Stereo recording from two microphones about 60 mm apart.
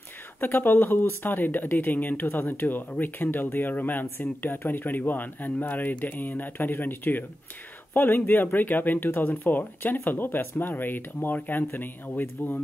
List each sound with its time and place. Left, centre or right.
0.4 s speech: left